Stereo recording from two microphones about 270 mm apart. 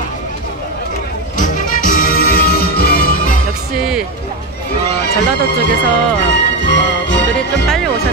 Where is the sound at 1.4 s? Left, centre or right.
Left.